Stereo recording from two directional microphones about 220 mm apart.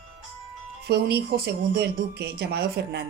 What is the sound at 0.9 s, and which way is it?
A woman's voice, 45° right (ahead or behind).